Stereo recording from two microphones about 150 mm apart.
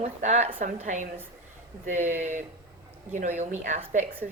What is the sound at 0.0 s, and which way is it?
Speech, 50° right (ahead or behind).